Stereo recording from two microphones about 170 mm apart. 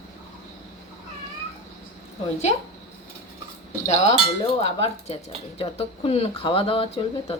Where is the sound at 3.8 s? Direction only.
40° left (ahead or behind).